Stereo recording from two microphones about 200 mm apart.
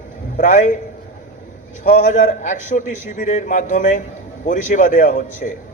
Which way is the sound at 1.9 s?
35° left (ahead or behind).